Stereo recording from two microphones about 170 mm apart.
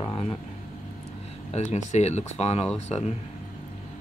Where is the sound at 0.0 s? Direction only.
30° left (ahead or behind).